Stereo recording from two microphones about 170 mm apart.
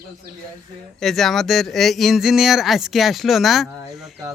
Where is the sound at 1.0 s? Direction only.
Centre (ahead or behind).